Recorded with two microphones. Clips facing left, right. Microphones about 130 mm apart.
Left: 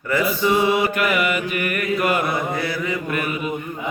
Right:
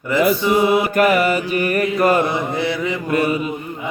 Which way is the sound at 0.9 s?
40° right (ahead or behind).